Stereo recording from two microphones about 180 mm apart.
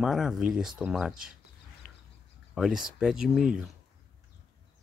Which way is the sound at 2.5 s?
5° right (ahead or behind).